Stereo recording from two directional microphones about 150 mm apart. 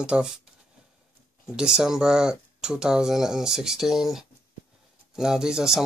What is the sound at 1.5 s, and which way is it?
Speech, 5° right (ahead or behind).